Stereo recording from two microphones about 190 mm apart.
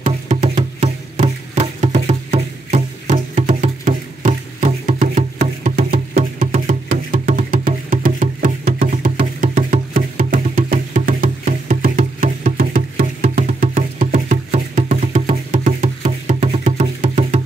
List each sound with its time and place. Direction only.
0.0 s music: 35° right (ahead or behind)